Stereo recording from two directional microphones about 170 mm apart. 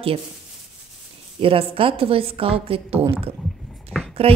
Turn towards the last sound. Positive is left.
turn(degrees=-35)  # may be behind; listen again after turning